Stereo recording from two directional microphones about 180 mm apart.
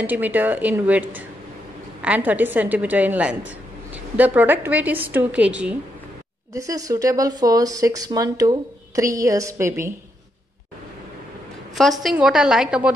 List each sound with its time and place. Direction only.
0.0 s a woman's voice: 10° right (ahead or behind)
6.5 s speech: 20° right (ahead or behind)
12.0 s a woman's voice: centre (ahead or behind)